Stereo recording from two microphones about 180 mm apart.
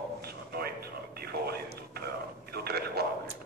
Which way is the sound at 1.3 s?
60° right (ahead or behind).